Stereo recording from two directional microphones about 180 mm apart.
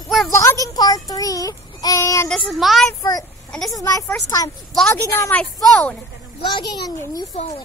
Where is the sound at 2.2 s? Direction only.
5° left (ahead or behind).